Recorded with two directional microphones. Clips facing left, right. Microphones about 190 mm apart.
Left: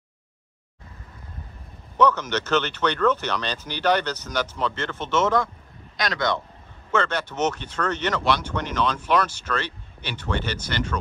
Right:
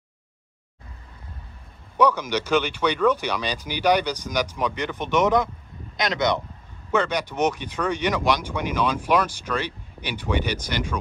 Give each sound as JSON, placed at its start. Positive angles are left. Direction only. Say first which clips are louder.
{"t": 2.0, "sound": "speech", "louder": "even", "side_deg": -10}